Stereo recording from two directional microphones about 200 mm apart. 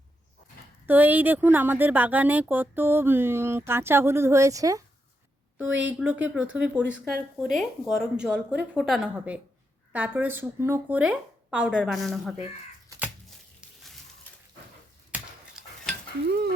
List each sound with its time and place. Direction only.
0.9 s speech: 10° right (ahead or behind)
5.9 s speech: 5° right (ahead or behind)
6.8 s speech: 65° right (ahead or behind)
7.3 s a woman's voice: centre (ahead or behind)
13.6 s a sound: centre (ahead or behind)
15.1 s a sound: 5° right (ahead or behind)
16.2 s dishes: 55° right (ahead or behind)